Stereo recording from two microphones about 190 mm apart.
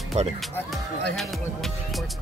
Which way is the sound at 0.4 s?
Centre (ahead or behind).